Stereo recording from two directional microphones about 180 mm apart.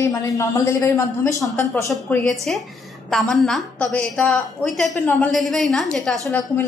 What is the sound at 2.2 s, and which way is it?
A woman's voice, centre (ahead or behind).